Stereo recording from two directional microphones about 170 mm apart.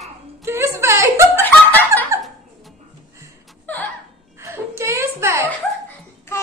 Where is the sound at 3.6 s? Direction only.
10° left (ahead or behind).